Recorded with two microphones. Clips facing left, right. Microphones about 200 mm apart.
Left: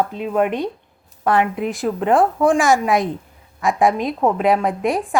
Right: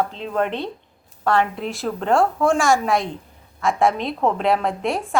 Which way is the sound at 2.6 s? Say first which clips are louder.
Left 2 dB; centre (ahead or behind).